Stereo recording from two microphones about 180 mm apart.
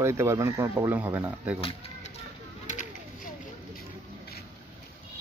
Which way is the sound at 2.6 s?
45° left (ahead or behind).